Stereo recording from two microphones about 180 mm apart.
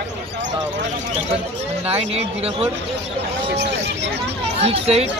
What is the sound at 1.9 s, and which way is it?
Speech, 35° right (ahead or behind).